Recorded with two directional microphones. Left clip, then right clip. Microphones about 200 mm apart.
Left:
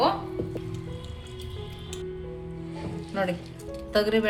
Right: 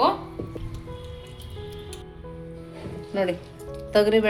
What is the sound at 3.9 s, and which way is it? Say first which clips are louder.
Speech: right 5 dB; 20° right (ahead or behind).